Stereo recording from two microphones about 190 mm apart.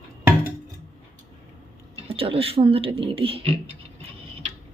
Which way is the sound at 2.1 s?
30° right (ahead or behind).